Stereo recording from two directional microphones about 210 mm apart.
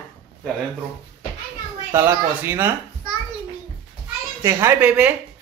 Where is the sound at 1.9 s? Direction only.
10° right (ahead or behind).